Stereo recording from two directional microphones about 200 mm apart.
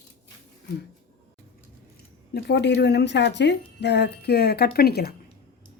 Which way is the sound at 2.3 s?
55° left (ahead or behind).